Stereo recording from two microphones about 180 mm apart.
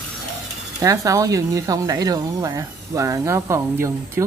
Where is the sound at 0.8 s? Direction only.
20° right (ahead or behind).